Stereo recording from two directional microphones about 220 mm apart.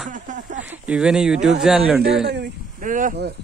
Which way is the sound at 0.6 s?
5° right (ahead or behind).